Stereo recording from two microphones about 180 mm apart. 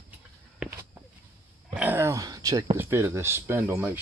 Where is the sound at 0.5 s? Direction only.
5° right (ahead or behind).